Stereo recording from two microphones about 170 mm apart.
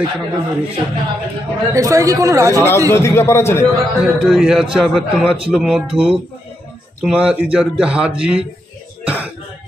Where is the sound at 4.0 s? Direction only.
5° right (ahead or behind).